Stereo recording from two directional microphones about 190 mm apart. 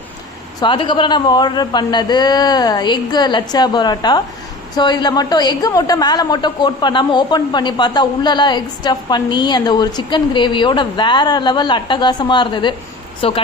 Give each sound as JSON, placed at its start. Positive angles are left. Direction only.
{"t": 0.6, "sound": "a woman's voice", "side_deg": 25}